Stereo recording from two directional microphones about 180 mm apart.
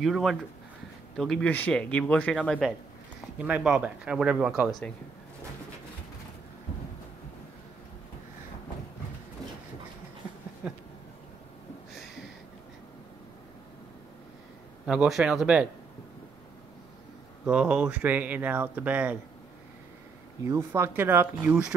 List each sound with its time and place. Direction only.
0.0 s speech: centre (ahead or behind)
3.4 s speech: 5° right (ahead or behind)
10.2 s a sound: 5° right (ahead or behind)
10.6 s speech: 5° right (ahead or behind)
14.9 s speech: 5° right (ahead or behind)
17.5 s speech: 5° right (ahead or behind)
20.4 s speech: 15° right (ahead or behind)